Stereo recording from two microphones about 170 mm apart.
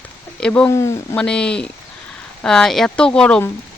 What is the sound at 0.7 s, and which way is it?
Speech, 15° left (ahead or behind).